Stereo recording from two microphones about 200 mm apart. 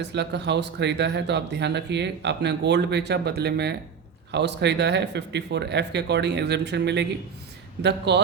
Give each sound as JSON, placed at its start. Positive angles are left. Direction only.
{"t": 0.0, "sound": "speech", "side_deg": -60}